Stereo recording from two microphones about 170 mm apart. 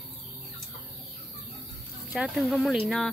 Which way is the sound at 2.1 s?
Centre (ahead or behind).